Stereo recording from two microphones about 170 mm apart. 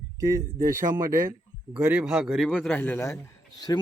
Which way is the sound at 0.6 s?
15° right (ahead or behind).